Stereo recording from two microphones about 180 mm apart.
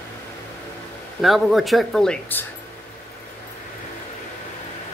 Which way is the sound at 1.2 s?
Centre (ahead or behind).